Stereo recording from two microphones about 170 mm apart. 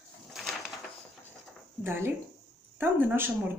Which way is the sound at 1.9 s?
15° right (ahead or behind).